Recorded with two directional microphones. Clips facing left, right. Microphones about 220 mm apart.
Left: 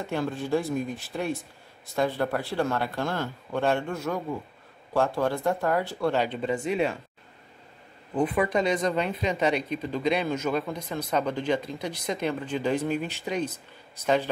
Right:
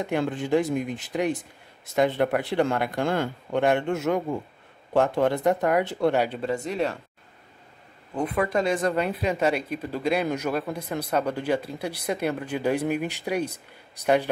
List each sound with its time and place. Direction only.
0.0 s speech: 15° right (ahead or behind)
6.1 s speech: centre (ahead or behind)
8.2 s speech: centre (ahead or behind)